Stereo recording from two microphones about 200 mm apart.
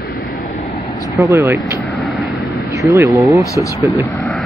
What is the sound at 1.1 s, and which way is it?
Speech, 15° right (ahead or behind).